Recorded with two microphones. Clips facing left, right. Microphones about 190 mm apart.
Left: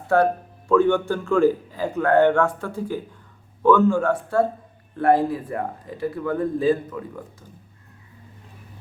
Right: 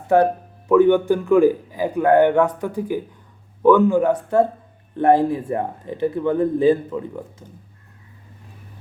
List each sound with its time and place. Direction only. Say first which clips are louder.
0.1 s a man's voice: right 3 dB; 15° right (ahead or behind)